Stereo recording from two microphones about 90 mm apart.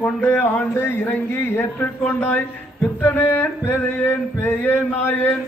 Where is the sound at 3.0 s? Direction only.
20° left (ahead or behind).